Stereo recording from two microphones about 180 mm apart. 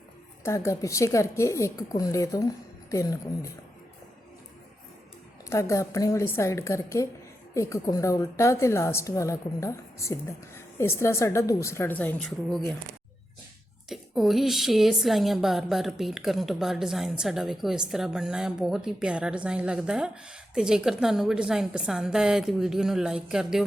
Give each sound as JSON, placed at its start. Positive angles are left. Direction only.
{"t": 0.4, "sound": "a woman's voice", "side_deg": 15}
{"t": 5.5, "sound": "a woman's voice", "side_deg": 15}
{"t": 13.9, "sound": "speech", "side_deg": 0}